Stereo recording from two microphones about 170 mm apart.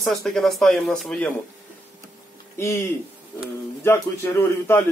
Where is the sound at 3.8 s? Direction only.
15° left (ahead or behind).